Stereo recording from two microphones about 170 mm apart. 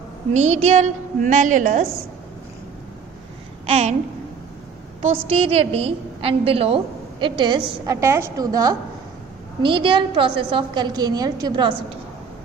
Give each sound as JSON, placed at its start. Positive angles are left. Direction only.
{"t": 0.3, "sound": "a woman's voice", "side_deg": -40}
{"t": 3.7, "sound": "babbling", "side_deg": -40}
{"t": 5.0, "sound": "a woman's voice", "side_deg": -35}